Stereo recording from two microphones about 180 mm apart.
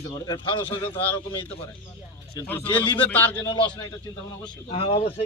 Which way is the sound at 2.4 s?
10° left (ahead or behind).